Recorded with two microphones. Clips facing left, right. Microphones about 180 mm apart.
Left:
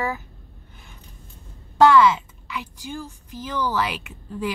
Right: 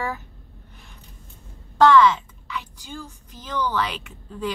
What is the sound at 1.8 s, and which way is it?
A woman's voice, 10° left (ahead or behind).